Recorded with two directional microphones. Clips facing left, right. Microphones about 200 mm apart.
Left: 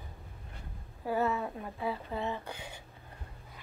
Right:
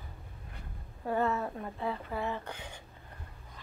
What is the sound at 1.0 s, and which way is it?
Speech, 5° left (ahead or behind).